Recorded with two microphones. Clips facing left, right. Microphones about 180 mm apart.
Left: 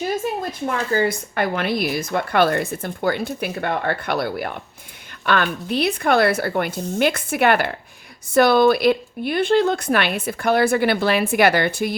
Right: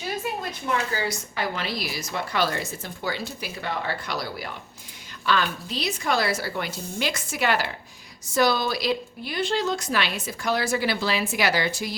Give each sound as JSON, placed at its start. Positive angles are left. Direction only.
{"t": 0.6, "sound": "a woman's voice", "side_deg": 50}